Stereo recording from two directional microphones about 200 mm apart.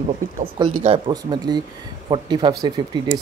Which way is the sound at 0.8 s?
25° right (ahead or behind).